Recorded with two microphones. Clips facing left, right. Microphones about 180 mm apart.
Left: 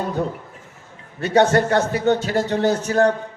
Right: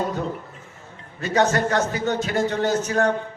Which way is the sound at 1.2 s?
30° left (ahead or behind).